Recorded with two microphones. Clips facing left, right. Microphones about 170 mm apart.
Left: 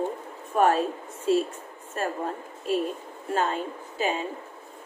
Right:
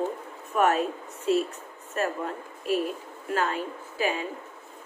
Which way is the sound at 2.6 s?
25° left (ahead or behind).